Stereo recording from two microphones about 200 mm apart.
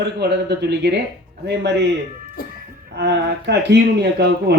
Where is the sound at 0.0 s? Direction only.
55° right (ahead or behind).